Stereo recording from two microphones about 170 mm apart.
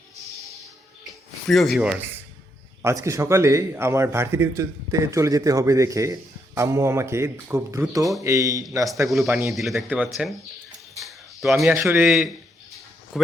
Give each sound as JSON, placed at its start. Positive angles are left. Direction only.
{"t": 1.5, "sound": "speech", "side_deg": 0}
{"t": 2.8, "sound": "a man's voice", "side_deg": -15}
{"t": 9.5, "sound": "speech", "side_deg": 0}
{"t": 11.0, "sound": "a sound", "side_deg": 0}
{"t": 11.7, "sound": "a man's voice", "side_deg": -10}